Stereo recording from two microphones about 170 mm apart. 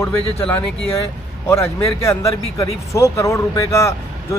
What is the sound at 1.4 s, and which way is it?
Speech, 15° left (ahead or behind).